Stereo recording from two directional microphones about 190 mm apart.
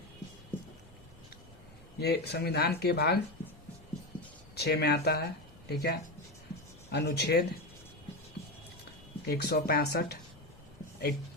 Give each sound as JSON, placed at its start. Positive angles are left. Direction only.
{"t": 2.0, "sound": "speech", "side_deg": 60}
{"t": 4.5, "sound": "speech", "side_deg": 60}
{"t": 9.2, "sound": "speech", "side_deg": 55}